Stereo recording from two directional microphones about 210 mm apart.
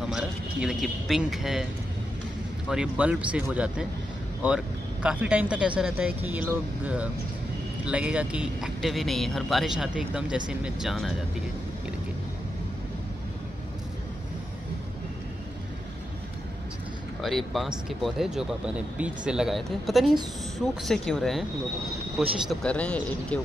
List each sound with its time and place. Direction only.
0.0 s speech: 5° right (ahead or behind)
2.7 s speech: 5° right (ahead or behind)
5.0 s speech: 5° right (ahead or behind)
17.2 s speech: centre (ahead or behind)